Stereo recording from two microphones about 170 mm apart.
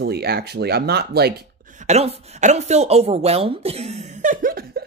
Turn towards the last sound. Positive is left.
turn(degrees=-60)  # may be behind; listen again after turning